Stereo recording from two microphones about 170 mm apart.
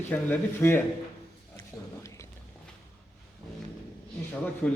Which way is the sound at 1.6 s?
15° left (ahead or behind).